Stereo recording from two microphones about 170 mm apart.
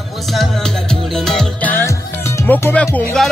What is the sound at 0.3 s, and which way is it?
Music, centre (ahead or behind).